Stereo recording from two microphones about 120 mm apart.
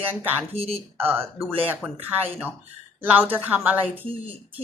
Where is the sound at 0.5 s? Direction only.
55° right (ahead or behind).